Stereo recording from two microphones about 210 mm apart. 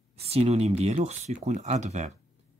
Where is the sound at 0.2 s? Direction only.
30° right (ahead or behind).